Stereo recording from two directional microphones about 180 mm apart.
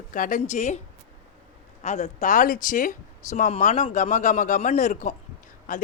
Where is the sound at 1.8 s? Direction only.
40° left (ahead or behind).